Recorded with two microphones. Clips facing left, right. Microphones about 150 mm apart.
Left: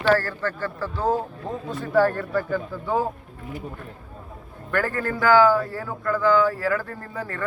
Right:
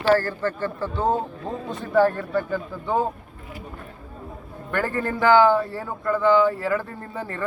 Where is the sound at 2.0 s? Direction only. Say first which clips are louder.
Right 1 dB; 10° right (ahead or behind).